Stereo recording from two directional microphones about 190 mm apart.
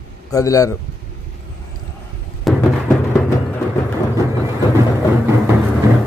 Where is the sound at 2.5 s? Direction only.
Centre (ahead or behind).